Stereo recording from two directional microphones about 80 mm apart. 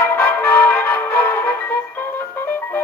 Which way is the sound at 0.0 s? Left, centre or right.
Left.